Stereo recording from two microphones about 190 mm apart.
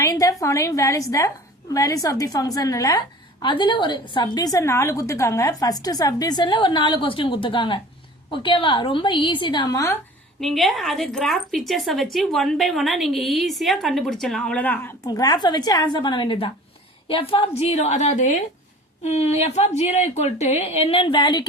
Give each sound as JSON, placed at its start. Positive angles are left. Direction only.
{"t": 0.0, "sound": "a woman's voice", "side_deg": 15}
{"t": 10.4, "sound": "a woman's voice", "side_deg": 0}